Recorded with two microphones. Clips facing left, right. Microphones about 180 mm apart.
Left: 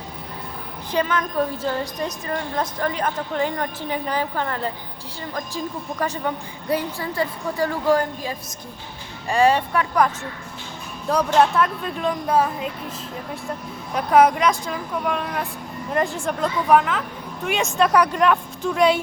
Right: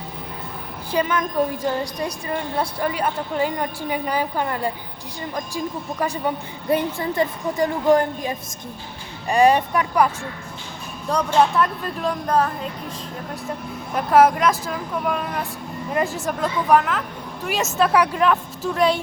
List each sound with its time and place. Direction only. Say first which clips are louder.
0.9 s a woman's voice: right 1 dB; 10° right (ahead or behind)
6.0 s a woman's voice: right 1 dB; 10° right (ahead or behind)
6.7 s a woman's voice: right 3 dB; 20° right (ahead or behind)
11.3 s speech: right 1 dB; centre (ahead or behind)
13.9 s speech: right 1 dB; centre (ahead or behind)